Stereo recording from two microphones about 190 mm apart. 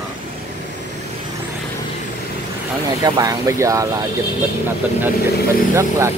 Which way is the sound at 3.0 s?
20° right (ahead or behind).